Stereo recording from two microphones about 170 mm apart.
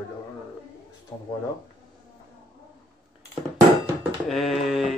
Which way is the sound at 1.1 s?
20° left (ahead or behind).